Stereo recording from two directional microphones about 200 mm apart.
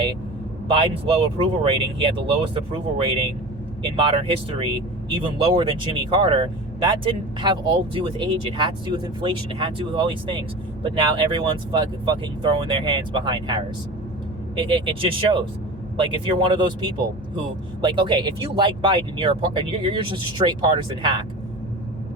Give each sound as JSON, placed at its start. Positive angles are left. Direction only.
{"t": 0.7, "sound": "speech", "side_deg": -25}
{"t": 14.6, "sound": "speech", "side_deg": -25}